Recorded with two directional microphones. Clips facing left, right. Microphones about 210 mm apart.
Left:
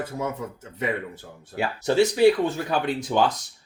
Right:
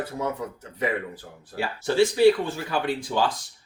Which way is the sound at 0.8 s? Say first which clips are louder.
Right 1 dB; 20° left (ahead or behind).